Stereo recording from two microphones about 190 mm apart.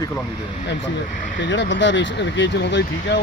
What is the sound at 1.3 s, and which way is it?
Speech, 70° left (ahead or behind).